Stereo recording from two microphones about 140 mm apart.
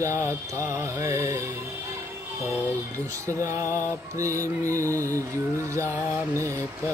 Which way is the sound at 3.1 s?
20° right (ahead or behind).